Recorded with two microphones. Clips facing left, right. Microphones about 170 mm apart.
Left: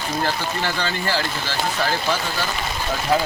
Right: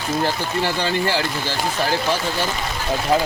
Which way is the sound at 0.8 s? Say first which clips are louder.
Right 3 dB; 15° right (ahead or behind).